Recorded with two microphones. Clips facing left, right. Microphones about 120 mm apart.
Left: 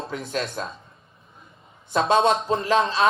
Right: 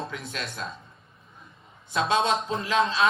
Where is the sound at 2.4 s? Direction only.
40° left (ahead or behind).